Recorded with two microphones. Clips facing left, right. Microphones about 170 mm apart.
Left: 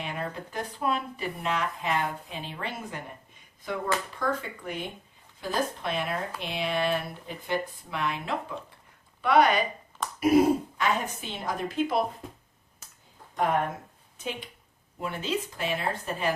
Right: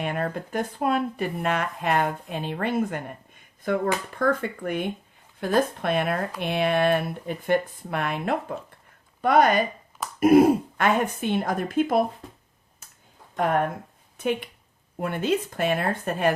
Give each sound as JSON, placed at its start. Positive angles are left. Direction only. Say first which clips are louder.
{"t": 0.0, "sound": "speech", "louder": "right 6 dB", "side_deg": -55}
{"t": 13.3, "sound": "speech", "louder": "right 3 dB", "side_deg": -50}